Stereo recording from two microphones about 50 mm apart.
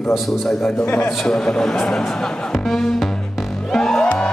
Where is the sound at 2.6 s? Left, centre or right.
Centre.